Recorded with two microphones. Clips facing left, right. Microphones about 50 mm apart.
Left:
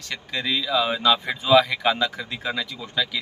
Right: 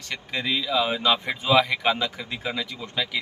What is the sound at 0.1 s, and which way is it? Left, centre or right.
A man's voice, centre.